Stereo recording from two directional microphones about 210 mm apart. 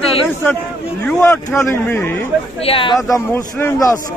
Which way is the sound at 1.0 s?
5° left (ahead or behind).